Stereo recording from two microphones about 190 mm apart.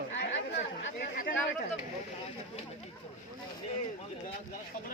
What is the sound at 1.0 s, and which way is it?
Speech, 45° left (ahead or behind).